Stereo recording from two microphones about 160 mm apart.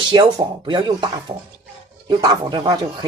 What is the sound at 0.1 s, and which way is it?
Speech, 30° right (ahead or behind).